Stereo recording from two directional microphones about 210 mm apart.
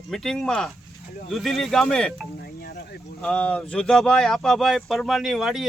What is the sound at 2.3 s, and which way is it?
Wind chime, 50° left (ahead or behind).